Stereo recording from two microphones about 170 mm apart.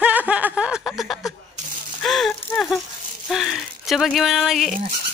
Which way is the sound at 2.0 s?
5° left (ahead or behind).